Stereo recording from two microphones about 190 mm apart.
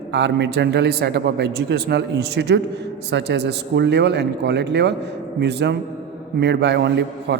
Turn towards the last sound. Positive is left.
turn(degrees=-65)  # may be behind; listen again after turning